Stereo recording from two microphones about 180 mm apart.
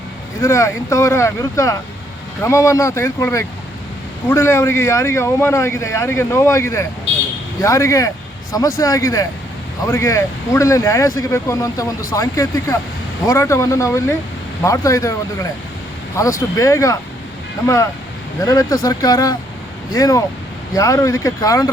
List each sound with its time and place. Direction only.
0.4 s a man's voice: 15° left (ahead or behind)
16.1 s a man's voice: 15° left (ahead or behind)
18.3 s speech: 20° left (ahead or behind)